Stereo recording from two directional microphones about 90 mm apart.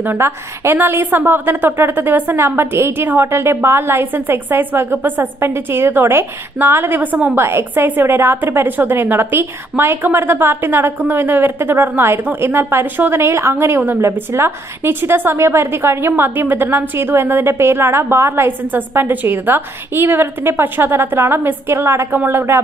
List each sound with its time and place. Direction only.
0.0 s a woman's voice: 25° right (ahead or behind)
7.3 s a woman's voice: 25° right (ahead or behind)